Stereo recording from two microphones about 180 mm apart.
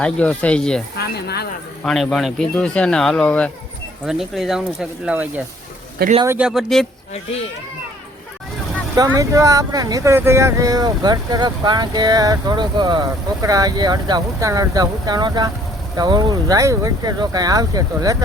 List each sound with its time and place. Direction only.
0.0 s speech: 5° left (ahead or behind)
0.9 s speech: 65° left (ahead or behind)
1.8 s speech: centre (ahead or behind)
9.0 s speech: 20° right (ahead or behind)